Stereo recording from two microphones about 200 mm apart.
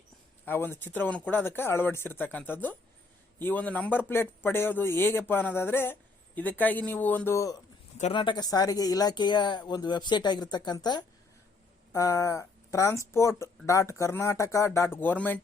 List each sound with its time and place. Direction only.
0.4 s speech: 10° left (ahead or behind)
7.9 s speech: 30° left (ahead or behind); by 15.4 s 10° left (ahead or behind)